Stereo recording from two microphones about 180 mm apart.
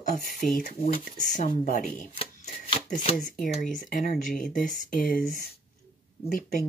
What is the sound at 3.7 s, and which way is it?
Speech, 50° left (ahead or behind).